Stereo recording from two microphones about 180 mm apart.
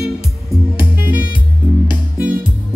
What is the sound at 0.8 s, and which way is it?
Music, 10° right (ahead or behind).